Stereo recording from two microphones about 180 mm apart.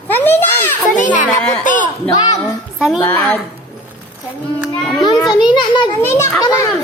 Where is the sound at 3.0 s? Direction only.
10° left (ahead or behind).